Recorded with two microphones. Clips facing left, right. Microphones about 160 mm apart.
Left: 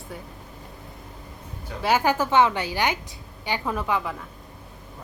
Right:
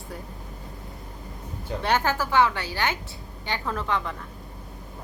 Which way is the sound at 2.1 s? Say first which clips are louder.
Left 2 dB; 20° left (ahead or behind).